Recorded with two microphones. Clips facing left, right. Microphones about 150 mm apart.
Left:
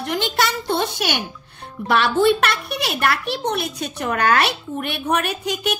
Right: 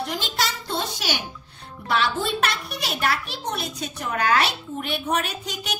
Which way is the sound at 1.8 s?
60° left (ahead or behind).